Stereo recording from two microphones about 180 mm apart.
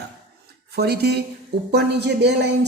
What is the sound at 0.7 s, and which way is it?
A man's voice, 65° right (ahead or behind).